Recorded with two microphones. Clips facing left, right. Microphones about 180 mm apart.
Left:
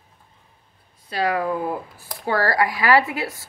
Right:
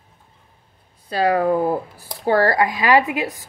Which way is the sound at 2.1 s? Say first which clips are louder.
Right 5 dB; 25° right (ahead or behind).